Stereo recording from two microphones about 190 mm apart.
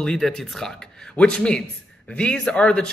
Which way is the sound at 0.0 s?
Centre (ahead or behind).